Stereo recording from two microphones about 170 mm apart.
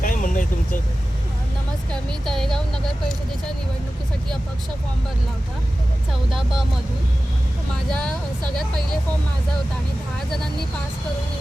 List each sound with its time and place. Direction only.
0.0 s vehicle: 50° left (ahead or behind)
1.9 s speech: 5° left (ahead or behind)